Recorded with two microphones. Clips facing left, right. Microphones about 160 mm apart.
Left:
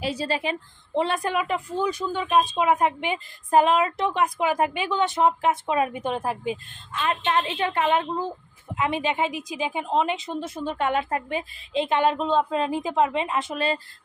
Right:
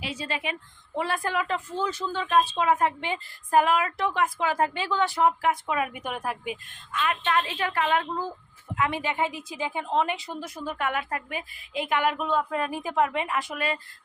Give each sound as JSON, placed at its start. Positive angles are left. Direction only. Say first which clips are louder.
{"t": 0.0, "sound": "a woman's voice", "louder": "left 6 dB", "side_deg": 35}
{"t": 0.9, "sound": "speech", "louder": "left 4 dB", "side_deg": 20}